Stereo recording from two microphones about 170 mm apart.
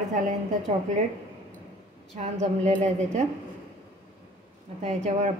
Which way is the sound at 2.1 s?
45° right (ahead or behind).